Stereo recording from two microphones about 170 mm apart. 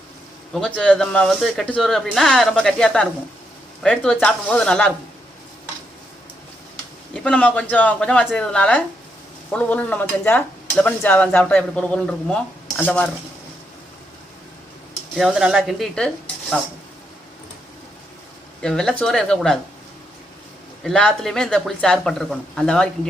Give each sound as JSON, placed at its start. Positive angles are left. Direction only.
{"t": 0.5, "sound": "speech", "side_deg": 5}
{"t": 7.1, "sound": "speech", "side_deg": 5}
{"t": 15.1, "sound": "speech", "side_deg": 0}
{"t": 18.6, "sound": "speech", "side_deg": 5}
{"t": 20.8, "sound": "speech", "side_deg": 5}